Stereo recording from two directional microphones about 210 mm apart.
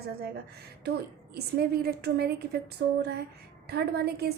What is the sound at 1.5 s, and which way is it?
A woman's voice, 50° right (ahead or behind).